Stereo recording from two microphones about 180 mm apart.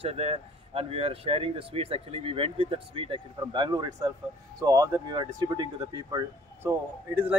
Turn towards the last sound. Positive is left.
turn(degrees=-10)  # may be behind; listen again after turning